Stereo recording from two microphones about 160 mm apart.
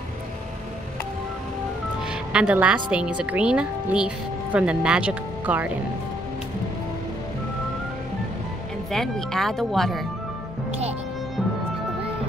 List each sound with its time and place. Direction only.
2.3 s speech: 5° right (ahead or behind)
8.9 s speech: centre (ahead or behind)